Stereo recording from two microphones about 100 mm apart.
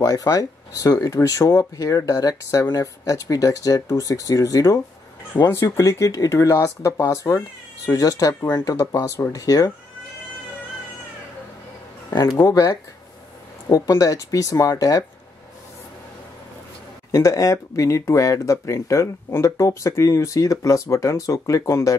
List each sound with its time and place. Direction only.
0.0 s speech: 35° left (ahead or behind)
12.4 s speech: 35° left (ahead or behind)
17.1 s speech: 30° left (ahead or behind)